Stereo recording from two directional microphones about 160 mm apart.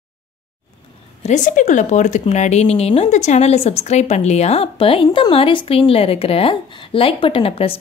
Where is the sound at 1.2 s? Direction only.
50° left (ahead or behind).